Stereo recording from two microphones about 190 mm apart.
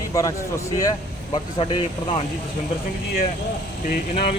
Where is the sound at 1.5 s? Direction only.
30° left (ahead or behind).